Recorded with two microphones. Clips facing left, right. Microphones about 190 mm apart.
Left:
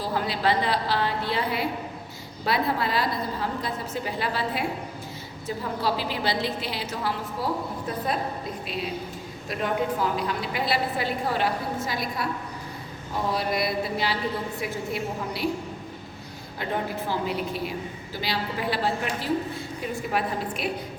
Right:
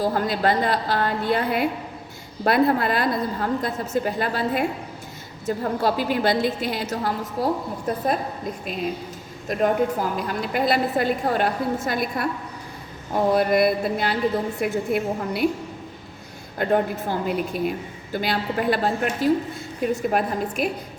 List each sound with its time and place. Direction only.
0.0 s a woman's voice: 45° right (ahead or behind)
13.3 s a woman's voice: 55° right (ahead or behind)
16.6 s a woman's voice: 50° right (ahead or behind)